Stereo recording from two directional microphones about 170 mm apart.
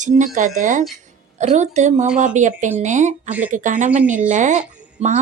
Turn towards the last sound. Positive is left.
turn(degrees=-45)  # may be behind; listen again after turning